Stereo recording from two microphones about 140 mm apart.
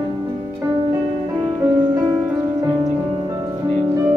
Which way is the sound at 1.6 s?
25° right (ahead or behind).